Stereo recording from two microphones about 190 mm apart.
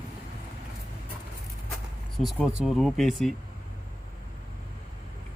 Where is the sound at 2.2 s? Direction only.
35° left (ahead or behind).